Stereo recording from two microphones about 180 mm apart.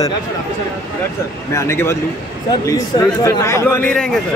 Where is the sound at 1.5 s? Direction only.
15° left (ahead or behind).